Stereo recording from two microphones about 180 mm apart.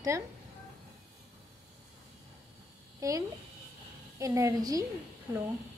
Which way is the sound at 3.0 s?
20° right (ahead or behind).